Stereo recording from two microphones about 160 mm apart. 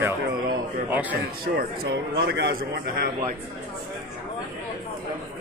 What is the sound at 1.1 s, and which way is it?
A man's voice, 75° right (ahead or behind).